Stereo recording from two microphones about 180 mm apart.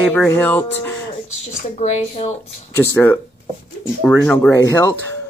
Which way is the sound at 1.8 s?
40° left (ahead or behind).